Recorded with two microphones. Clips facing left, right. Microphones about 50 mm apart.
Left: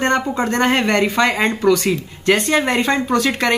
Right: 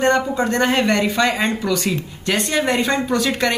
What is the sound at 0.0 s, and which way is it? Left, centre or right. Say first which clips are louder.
A man's voice: right 1 dB; left.